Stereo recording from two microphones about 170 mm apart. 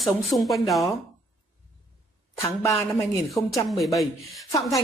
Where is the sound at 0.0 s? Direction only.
Centre (ahead or behind).